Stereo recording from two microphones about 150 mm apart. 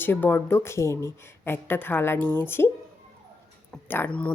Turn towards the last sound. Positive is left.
turn(degrees=10)  # may be behind; listen again after turning